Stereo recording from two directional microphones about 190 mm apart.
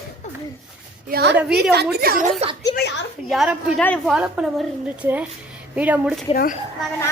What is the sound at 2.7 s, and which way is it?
Speech, 60° left (ahead or behind).